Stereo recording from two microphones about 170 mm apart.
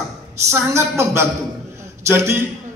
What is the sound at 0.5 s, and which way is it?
A woman's voice, 15° right (ahead or behind).